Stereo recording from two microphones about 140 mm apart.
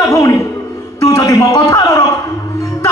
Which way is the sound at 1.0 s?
25° left (ahead or behind).